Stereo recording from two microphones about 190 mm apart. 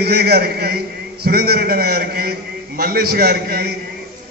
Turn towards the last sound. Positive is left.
turn(degrees=-55)  # may be behind; listen again after turning